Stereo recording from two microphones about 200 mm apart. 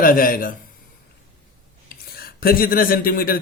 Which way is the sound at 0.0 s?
45° left (ahead or behind).